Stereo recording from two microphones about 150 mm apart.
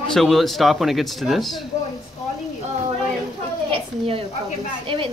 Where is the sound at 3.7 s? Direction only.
40° right (ahead or behind).